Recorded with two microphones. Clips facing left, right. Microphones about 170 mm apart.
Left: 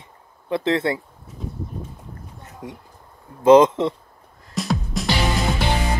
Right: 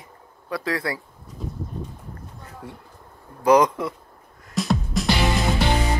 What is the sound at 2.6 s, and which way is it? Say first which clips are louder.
Speech: left 3 dB; 15° left (ahead or behind).